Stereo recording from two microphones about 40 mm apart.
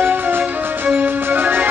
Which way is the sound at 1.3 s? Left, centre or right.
Right.